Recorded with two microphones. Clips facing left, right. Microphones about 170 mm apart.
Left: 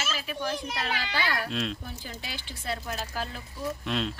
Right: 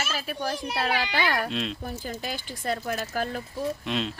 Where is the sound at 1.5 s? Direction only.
Centre (ahead or behind).